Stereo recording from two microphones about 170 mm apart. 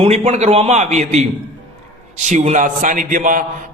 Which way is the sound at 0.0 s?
40° right (ahead or behind).